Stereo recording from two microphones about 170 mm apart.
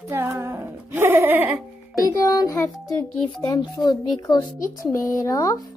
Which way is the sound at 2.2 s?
20° left (ahead or behind).